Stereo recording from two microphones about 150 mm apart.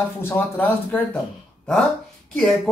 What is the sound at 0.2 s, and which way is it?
Speech, 15° left (ahead or behind).